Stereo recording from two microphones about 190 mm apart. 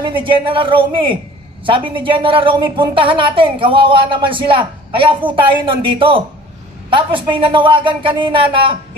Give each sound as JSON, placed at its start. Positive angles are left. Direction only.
{"t": 0.0, "sound": "a woman's voice", "side_deg": -25}